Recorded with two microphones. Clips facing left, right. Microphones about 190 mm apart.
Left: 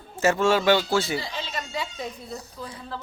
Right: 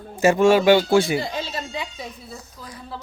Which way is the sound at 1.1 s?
50° right (ahead or behind).